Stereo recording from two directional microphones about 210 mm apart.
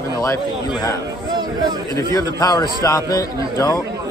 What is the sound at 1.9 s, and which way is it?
A man's voice, 15° left (ahead or behind).